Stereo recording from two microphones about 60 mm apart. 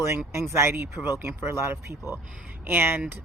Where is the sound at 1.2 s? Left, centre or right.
Right.